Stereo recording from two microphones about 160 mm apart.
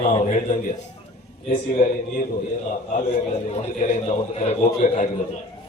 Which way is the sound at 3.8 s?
45° left (ahead or behind).